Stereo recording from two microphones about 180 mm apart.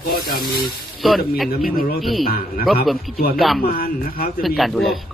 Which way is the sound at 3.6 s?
55° left (ahead or behind).